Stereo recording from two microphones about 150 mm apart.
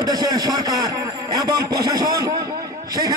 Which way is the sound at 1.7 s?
90° right.